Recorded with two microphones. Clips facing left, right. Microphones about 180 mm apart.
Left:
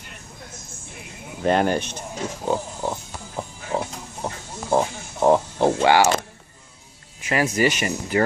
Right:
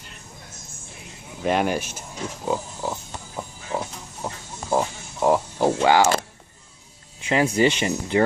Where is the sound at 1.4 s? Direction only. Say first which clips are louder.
Left 2 dB; centre (ahead or behind).